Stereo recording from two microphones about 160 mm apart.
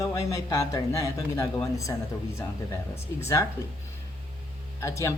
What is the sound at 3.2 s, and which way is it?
Speech, 20° left (ahead or behind).